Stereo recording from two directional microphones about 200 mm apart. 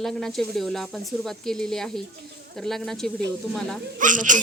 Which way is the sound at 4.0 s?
40° right (ahead or behind).